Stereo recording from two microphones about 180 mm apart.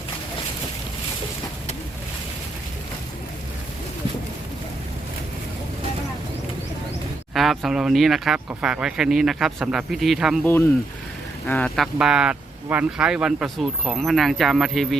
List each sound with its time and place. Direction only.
7.3 s speech: centre (ahead or behind)
10.4 s speech: 15° left (ahead or behind)
11.9 s speech: 5° right (ahead or behind)